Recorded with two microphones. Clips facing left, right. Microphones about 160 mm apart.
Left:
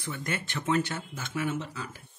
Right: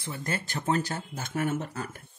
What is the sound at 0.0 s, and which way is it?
Speech, 30° right (ahead or behind).